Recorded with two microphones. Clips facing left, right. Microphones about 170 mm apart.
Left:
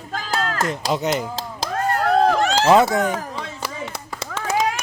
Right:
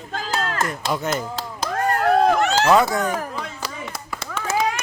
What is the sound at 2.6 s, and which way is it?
Speech, 20° left (ahead or behind).